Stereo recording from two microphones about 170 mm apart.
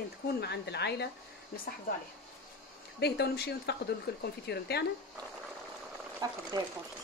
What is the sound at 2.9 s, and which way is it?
Speech, 75° left (ahead or behind).